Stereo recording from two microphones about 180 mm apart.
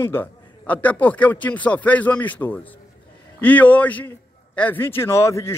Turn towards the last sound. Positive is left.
turn(degrees=15)  # may be behind; listen again after turning